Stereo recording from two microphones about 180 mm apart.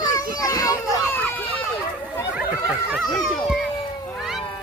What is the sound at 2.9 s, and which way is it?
Children playing, centre (ahead or behind).